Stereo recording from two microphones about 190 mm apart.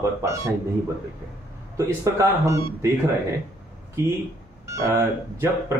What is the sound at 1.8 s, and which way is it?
Speech, 15° right (ahead or behind).